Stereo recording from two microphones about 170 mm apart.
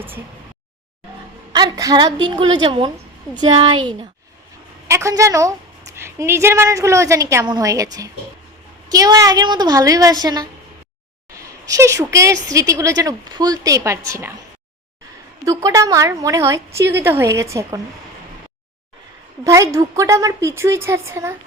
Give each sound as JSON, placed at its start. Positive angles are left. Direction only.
{"t": 1.5, "sound": "a woman's voice", "side_deg": -20}
{"t": 4.9, "sound": "a woman's voice", "side_deg": -15}
{"t": 15.4, "sound": "a woman's voice", "side_deg": -20}
{"t": 19.5, "sound": "a woman's voice", "side_deg": -20}